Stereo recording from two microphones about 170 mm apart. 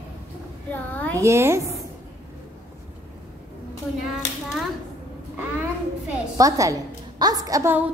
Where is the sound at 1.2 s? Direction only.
15° right (ahead or behind).